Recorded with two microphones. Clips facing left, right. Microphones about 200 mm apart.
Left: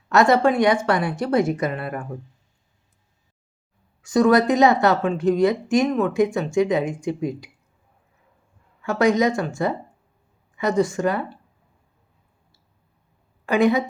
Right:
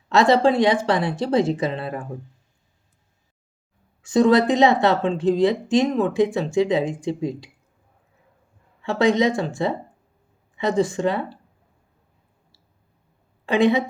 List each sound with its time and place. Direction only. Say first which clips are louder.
0.1 s speech: even; 30° right (ahead or behind)
4.1 s speech: even; 25° right (ahead or behind)
8.8 s speech: even; 30° right (ahead or behind)
13.4 s a woman's voice: even; 25° right (ahead or behind)